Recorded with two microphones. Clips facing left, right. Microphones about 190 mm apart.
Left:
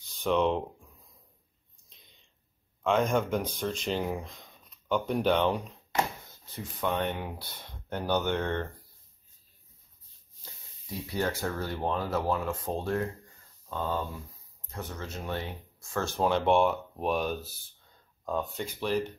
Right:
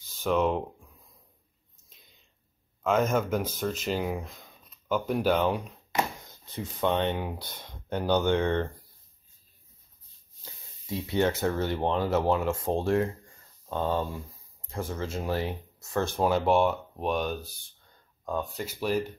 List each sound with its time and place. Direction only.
0.0 s speech: centre (ahead or behind)
2.8 s speech: 5° right (ahead or behind)
6.5 s speech: 25° right (ahead or behind)
10.9 s speech: 25° right (ahead or behind)
14.7 s speech: 30° right (ahead or behind)
15.9 s speech: 10° right (ahead or behind)